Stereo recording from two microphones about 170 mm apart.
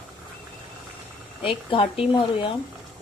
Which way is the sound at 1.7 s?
35° left (ahead or behind).